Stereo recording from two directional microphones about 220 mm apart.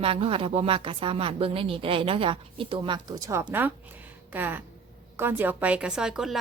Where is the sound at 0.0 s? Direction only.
25° right (ahead or behind).